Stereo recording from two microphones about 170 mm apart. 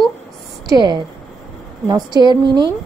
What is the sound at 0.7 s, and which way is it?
A woman's voice, 25° right (ahead or behind).